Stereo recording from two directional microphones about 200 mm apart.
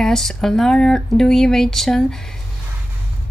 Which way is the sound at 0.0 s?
Centre (ahead or behind).